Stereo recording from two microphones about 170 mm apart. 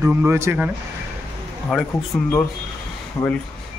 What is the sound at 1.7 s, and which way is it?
Speech, centre (ahead or behind).